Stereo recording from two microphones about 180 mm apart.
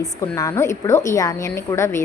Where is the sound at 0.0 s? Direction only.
20° left (ahead or behind).